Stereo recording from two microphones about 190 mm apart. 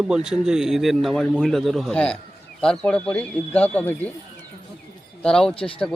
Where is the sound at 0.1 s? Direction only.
5° right (ahead or behind).